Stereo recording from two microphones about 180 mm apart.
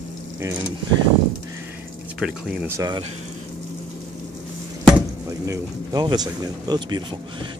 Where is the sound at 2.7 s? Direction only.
20° right (ahead or behind).